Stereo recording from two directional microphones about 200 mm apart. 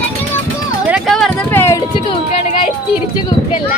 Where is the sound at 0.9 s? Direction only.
Centre (ahead or behind).